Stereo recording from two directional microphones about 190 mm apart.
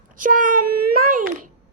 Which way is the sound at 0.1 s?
45° right (ahead or behind).